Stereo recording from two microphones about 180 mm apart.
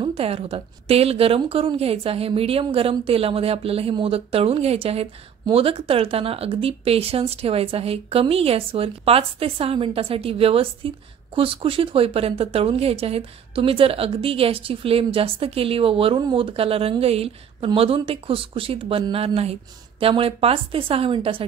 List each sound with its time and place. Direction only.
0.0 s a woman's voice: 30° right (ahead or behind)